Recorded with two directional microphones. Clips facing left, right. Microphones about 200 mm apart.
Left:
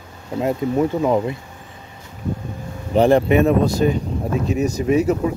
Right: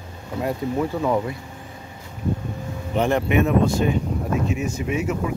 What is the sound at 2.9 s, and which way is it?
Speech, 35° left (ahead or behind).